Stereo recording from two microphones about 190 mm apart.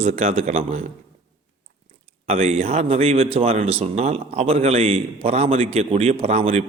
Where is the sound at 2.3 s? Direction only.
30° right (ahead or behind).